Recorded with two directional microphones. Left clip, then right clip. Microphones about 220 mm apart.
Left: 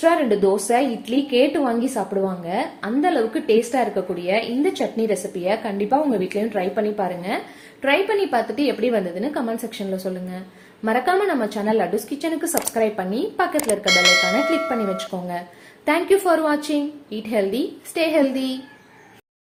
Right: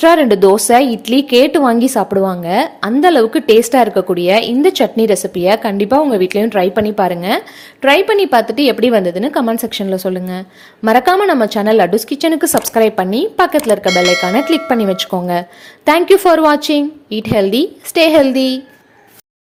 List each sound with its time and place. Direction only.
0.0 s a woman's voice: 50° right (ahead or behind)
13.8 s speech: centre (ahead or behind)
14.7 s a woman's voice: 45° right (ahead or behind)